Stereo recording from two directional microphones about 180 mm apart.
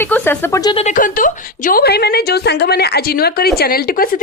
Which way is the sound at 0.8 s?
45° left (ahead or behind).